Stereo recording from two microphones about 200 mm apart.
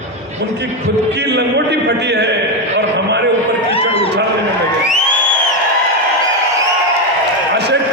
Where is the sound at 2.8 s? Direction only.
60° right (ahead or behind).